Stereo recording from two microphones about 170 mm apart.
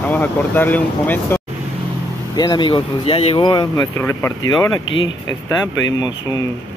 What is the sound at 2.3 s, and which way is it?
Speech, 25° left (ahead or behind).